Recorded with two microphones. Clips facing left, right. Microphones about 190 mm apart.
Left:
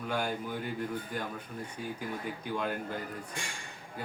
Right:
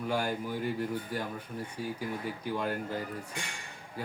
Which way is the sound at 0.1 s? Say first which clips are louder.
Right 1 dB; 10° right (ahead or behind).